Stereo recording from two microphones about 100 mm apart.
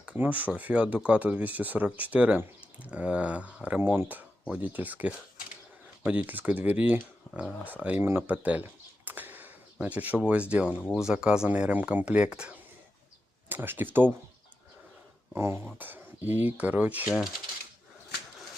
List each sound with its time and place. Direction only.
0.0 s speech: 15° right (ahead or behind)
9.0 s a sound: 20° right (ahead or behind)
9.8 s speech: 15° right (ahead or behind)
15.4 s speech: 25° right (ahead or behind)